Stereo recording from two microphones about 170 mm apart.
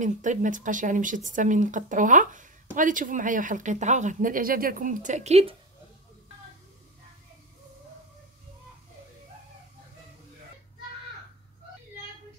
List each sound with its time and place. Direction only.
0.0 s speech: 45° right (ahead or behind)